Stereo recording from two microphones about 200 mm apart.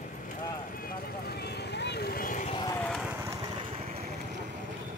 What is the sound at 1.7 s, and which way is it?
Vehicle, 55° left (ahead or behind).